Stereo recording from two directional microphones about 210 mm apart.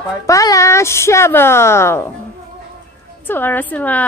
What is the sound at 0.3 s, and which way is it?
A woman's voice, 15° left (ahead or behind).